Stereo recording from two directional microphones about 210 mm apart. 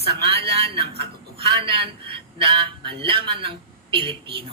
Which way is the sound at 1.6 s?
25° right (ahead or behind).